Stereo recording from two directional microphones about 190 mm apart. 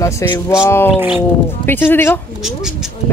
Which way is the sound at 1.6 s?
10° left (ahead or behind).